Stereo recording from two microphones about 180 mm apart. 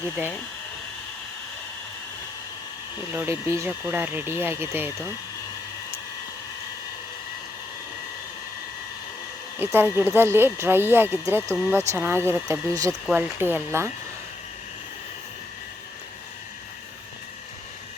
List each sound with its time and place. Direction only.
3.1 s speech: 15° right (ahead or behind)
9.6 s speech: 10° right (ahead or behind)